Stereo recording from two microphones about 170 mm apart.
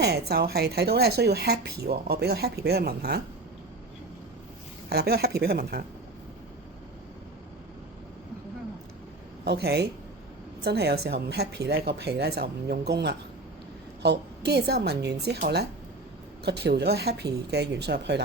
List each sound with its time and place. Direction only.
0.0 s speech: 70° right (ahead or behind)
4.9 s speech: 70° right (ahead or behind)
9.4 s speech: 70° right (ahead or behind)